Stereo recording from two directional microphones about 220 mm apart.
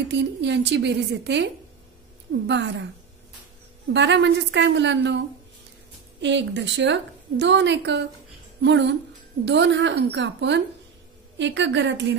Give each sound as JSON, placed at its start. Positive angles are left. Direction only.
{"t": 0.1, "sound": "a woman's voice", "side_deg": -55}
{"t": 3.9, "sound": "a woman's voice", "side_deg": -55}
{"t": 6.2, "sound": "a woman's voice", "side_deg": -55}